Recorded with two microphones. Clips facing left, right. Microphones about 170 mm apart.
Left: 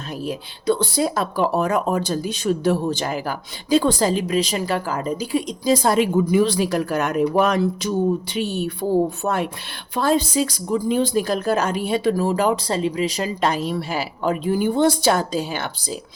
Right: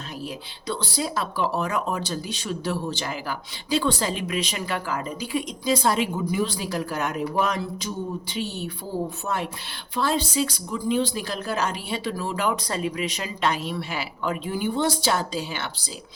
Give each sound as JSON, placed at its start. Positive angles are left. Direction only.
{"t": 0.3, "sound": "speech", "side_deg": 50}
{"t": 6.3, "sound": "speech", "side_deg": 75}